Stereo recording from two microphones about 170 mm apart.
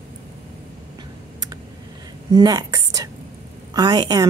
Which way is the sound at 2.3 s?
20° right (ahead or behind).